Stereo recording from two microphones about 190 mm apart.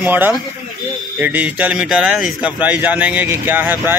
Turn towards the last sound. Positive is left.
turn(degrees=-10)  # may be behind; listen again after turning